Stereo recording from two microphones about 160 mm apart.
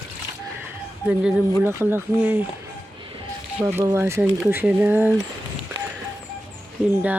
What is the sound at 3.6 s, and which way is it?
Speech, 10° right (ahead or behind).